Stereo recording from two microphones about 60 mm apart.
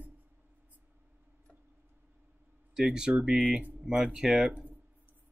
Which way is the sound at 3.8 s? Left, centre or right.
Centre.